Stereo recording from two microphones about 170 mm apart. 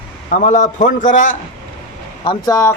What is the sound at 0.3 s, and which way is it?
A man's voice, 45° left (ahead or behind).